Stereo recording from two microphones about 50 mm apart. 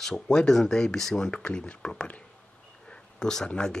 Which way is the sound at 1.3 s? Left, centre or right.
Left.